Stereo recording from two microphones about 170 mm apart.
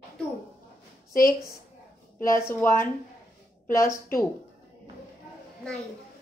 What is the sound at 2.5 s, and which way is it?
Speech, 15° left (ahead or behind).